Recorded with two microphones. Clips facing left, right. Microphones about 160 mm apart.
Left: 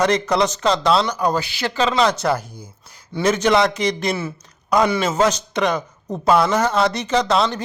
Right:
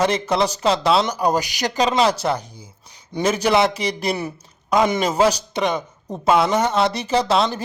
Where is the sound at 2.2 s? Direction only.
5° right (ahead or behind).